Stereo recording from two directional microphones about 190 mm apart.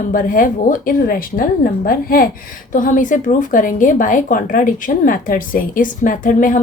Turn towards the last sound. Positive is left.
turn(degrees=45)  # may be behind; listen again after turning